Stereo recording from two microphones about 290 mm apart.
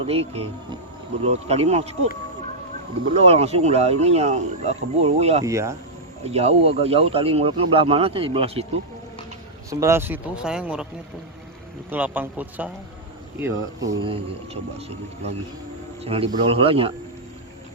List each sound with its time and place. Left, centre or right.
0.1 s speech: centre
3.2 s speech: right
5.5 s speech: centre
6.3 s speech: right
9.6 s speech: centre
11.9 s speech: centre